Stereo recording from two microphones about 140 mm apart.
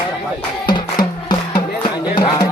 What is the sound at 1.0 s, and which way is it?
Music, 30° left (ahead or behind).